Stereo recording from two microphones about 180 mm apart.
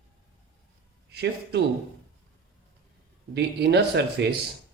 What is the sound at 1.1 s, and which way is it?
Speech, 70° right (ahead or behind).